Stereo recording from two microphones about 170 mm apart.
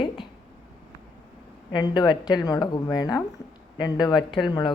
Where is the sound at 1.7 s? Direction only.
25° left (ahead or behind).